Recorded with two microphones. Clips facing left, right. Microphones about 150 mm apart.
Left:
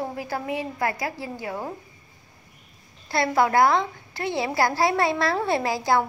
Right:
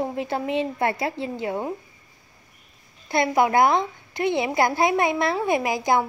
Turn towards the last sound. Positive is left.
turn(degrees=-20)  # may be behind; listen again after turning